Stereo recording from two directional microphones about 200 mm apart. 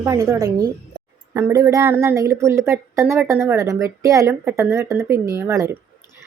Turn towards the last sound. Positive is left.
turn(degrees=-15)  # may be behind; listen again after turning